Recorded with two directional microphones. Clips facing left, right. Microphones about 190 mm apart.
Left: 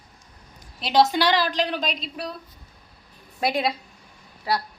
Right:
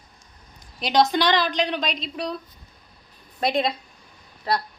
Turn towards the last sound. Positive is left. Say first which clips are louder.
# right 1 dB
turn(degrees=10)  # may be behind; listen again after turning